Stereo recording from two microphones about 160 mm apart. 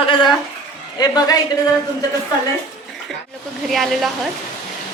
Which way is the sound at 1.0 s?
25° left (ahead or behind).